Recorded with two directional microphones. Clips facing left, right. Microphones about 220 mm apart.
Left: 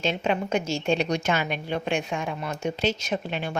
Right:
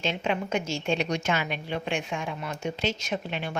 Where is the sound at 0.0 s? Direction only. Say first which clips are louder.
Left 3 dB; 40° left (ahead or behind).